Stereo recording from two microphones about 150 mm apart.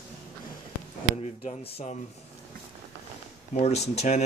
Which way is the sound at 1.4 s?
45° left (ahead or behind).